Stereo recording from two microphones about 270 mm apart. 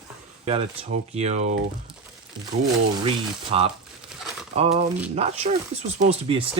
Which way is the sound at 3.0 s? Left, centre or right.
Right.